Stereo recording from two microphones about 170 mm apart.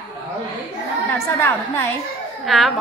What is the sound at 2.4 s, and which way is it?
Speech, centre (ahead or behind).